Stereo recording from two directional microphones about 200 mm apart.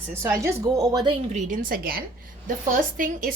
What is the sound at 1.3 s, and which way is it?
A woman's voice, 40° right (ahead or behind).